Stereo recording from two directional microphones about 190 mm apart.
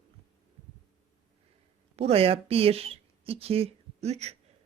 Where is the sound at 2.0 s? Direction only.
30° right (ahead or behind).